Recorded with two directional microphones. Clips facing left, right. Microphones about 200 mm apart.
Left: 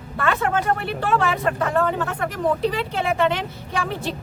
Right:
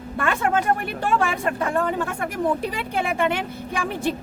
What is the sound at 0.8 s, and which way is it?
Speech, 50° right (ahead or behind).